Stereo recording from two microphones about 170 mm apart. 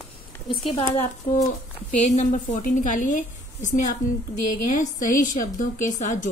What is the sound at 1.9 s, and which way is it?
A woman's voice, 45° left (ahead or behind).